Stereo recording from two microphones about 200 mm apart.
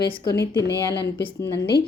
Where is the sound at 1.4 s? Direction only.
55° left (ahead or behind).